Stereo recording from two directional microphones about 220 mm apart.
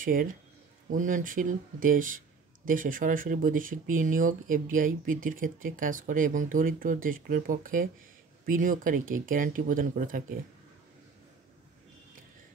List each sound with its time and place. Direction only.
0.0 s speech: 40° right (ahead or behind)